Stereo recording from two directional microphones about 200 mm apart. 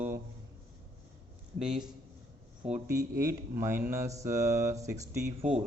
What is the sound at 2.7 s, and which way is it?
Speech, 35° right (ahead or behind).